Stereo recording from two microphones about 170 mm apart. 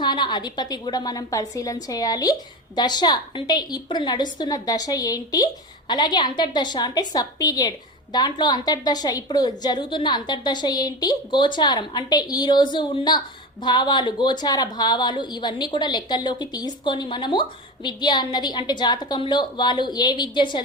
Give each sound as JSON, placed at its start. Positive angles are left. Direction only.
{"t": 0.0, "sound": "a woman's voice", "side_deg": 25}